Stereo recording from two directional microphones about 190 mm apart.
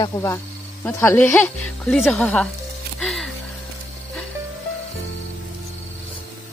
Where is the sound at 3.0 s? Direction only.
Centre (ahead or behind).